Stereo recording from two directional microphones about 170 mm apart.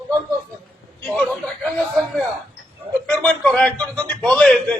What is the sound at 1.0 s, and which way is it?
Speech, 5° left (ahead or behind).